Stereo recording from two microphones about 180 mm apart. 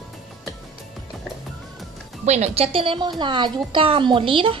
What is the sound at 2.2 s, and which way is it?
A woman's voice, 40° right (ahead or behind).